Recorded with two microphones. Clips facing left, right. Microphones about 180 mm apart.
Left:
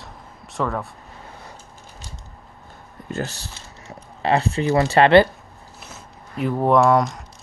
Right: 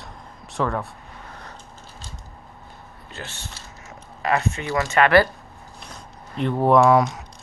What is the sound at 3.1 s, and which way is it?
Speech, 40° left (ahead or behind).